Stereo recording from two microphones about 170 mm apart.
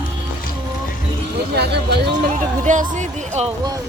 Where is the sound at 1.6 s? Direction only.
75° right (ahead or behind).